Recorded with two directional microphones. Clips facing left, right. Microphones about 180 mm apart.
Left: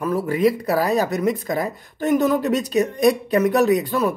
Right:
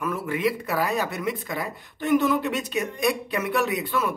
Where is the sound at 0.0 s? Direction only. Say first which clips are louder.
Left 7 dB; 35° left (ahead or behind).